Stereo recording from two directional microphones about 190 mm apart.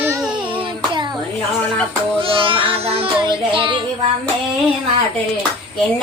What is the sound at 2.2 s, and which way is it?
Child singing, 30° right (ahead or behind).